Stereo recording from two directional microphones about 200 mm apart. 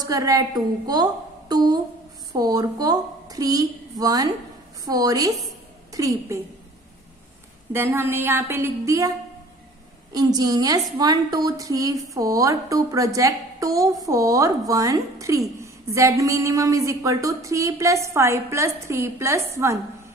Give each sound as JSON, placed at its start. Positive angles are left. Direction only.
{"t": 0.0, "sound": "a woman's voice", "side_deg": -20}
{"t": 7.7, "sound": "a woman's voice", "side_deg": -10}
{"t": 10.1, "sound": "a woman's voice", "side_deg": -20}